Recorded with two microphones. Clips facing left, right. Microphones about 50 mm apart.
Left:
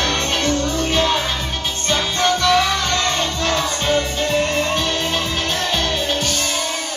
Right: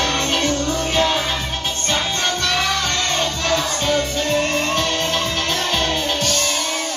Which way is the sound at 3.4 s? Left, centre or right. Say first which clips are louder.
Even; left.